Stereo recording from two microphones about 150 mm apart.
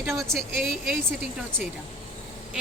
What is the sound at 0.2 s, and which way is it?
Speech, centre (ahead or behind).